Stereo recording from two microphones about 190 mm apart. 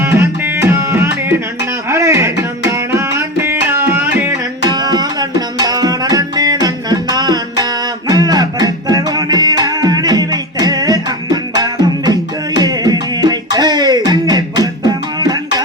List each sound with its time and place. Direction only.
0.0 s music: 10° right (ahead or behind)
4.7 s tabla: 20° right (ahead or behind)
14.1 s music: 20° right (ahead or behind)